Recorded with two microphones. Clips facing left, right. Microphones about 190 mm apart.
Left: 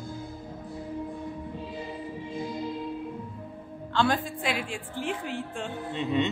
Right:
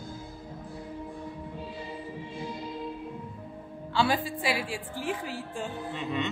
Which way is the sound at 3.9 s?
5° right (ahead or behind).